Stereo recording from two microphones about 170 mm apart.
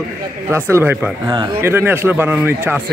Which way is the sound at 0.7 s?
15° right (ahead or behind).